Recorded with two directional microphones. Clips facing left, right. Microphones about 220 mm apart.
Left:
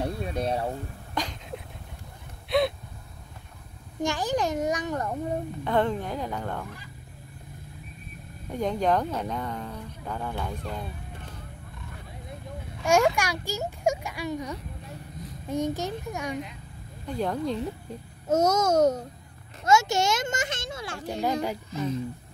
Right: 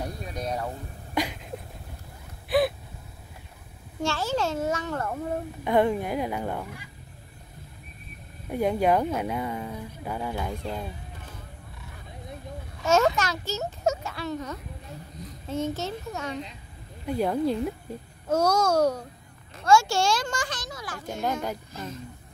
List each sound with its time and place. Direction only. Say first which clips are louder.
0.0 s a sound: left 4 dB; 30° left (ahead or behind)
1.1 s a sound: right 4 dB; 10° right (ahead or behind)
2.5 s gasp: right 1 dB; 5° right (ahead or behind)
4.0 s a child's voice: left 1 dB; 15° left (ahead or behind)
5.6 s speech: right 4 dB; 10° right (ahead or behind)
8.5 s speech: right 2 dB; 10° right (ahead or behind)
12.8 s a child's voice: even; 15° left (ahead or behind)
17.0 s speech: right 3 dB; 10° right (ahead or behind)
18.3 s a child's voice: left 1 dB; 20° left (ahead or behind)
21.2 s a child's voice: left 2 dB; 10° left (ahead or behind)